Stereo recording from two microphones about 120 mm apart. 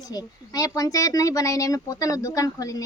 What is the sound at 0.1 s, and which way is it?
Speech, 30° left (ahead or behind).